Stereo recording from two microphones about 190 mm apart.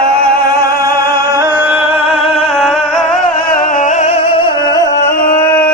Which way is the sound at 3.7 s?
40° left (ahead or behind).